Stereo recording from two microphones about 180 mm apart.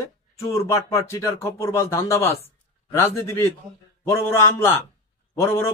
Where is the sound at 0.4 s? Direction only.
15° left (ahead or behind).